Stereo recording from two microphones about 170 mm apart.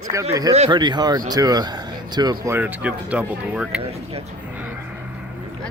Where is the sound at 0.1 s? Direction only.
20° right (ahead or behind).